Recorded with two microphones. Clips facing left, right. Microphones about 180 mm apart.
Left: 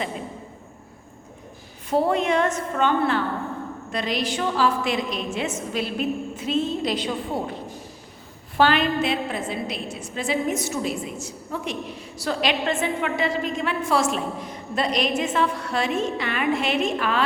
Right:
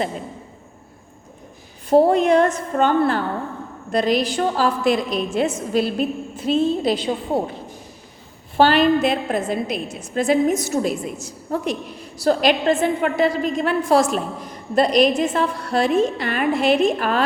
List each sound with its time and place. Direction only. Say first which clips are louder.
1.9 s a woman's voice: right 7 dB; 40° right (ahead or behind)
8.5 s a woman's voice: right 5 dB; 35° right (ahead or behind)